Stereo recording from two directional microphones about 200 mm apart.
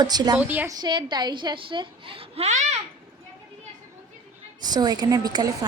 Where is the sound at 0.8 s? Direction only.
20° right (ahead or behind).